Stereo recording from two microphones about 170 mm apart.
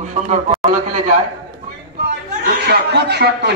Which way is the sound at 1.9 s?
75° right (ahead or behind).